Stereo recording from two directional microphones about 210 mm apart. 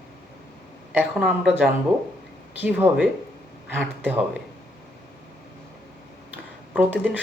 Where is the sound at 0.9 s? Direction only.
5° right (ahead or behind).